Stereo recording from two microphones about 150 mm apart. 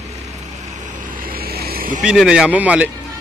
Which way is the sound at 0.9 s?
60° right (ahead or behind).